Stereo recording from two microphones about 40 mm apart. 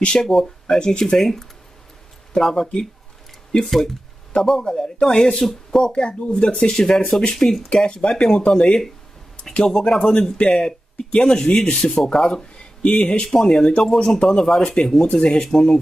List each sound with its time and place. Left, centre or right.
0.2 s speech: centre
2.4 s speech: centre; by 6.5 s left
6.6 s speech: centre
7.7 s speech: left
9.7 s speech: centre
11.0 s speech: left
11.5 s speech: centre
15.4 s speech: centre